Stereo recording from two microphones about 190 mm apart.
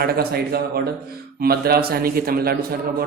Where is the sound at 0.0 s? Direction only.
55° right (ahead or behind).